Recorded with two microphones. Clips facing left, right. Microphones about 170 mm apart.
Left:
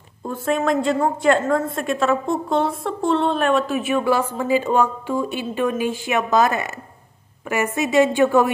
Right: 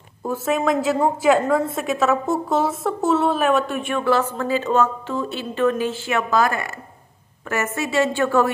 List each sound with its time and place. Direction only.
0.3 s a woman's voice: centre (ahead or behind); by 8.5 s 15° left (ahead or behind)